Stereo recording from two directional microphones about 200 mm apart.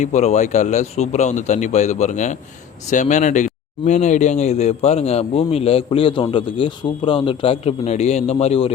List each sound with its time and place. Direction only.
0.0 s a man's voice: 35° left (ahead or behind)